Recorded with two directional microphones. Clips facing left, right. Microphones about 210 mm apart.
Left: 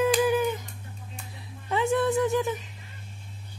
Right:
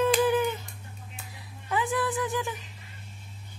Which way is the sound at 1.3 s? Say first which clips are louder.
Left 2 dB; 25° left (ahead or behind).